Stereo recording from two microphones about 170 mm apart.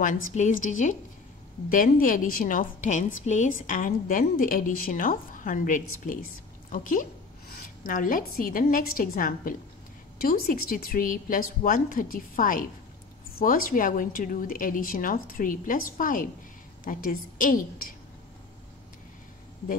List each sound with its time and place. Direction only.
0.0 s a woman's voice: 45° left (ahead or behind)
1.7 s a woman's voice: 55° left (ahead or behind)